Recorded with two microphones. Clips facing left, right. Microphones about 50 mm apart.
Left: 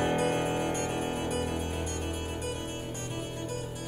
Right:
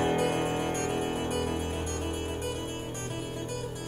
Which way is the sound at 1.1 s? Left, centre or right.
Centre.